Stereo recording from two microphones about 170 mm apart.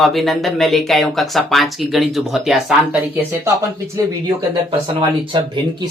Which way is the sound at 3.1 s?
15° right (ahead or behind).